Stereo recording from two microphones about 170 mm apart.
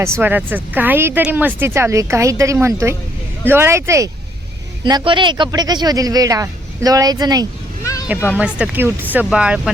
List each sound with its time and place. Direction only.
0.0 s speech: 15° right (ahead or behind)
8.4 s speech: 5° right (ahead or behind)